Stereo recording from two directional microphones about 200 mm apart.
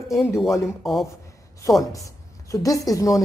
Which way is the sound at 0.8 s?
Centre (ahead or behind).